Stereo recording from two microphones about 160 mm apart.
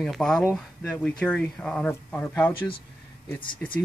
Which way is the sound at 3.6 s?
10° left (ahead or behind).